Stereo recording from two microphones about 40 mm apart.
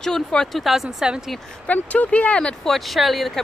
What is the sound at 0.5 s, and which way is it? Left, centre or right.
Speech, centre.